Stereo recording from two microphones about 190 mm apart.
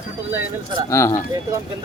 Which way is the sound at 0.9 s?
15° left (ahead or behind).